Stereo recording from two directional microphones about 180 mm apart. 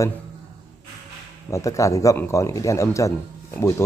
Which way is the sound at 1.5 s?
20° left (ahead or behind).